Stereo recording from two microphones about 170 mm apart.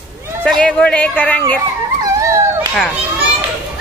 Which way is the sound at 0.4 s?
5° left (ahead or behind).